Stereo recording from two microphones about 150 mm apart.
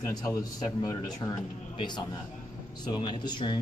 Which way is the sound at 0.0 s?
25° left (ahead or behind).